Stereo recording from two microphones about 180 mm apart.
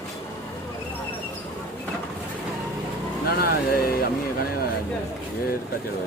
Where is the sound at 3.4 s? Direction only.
55° left (ahead or behind).